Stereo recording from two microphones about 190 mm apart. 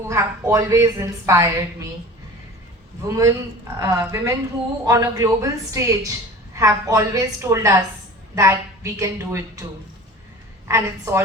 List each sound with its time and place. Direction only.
0.1 s a woman's voice: 15° right (ahead or behind)
3.1 s a woman's voice: 15° right (ahead or behind)
10.7 s a woman's voice: 15° right (ahead or behind)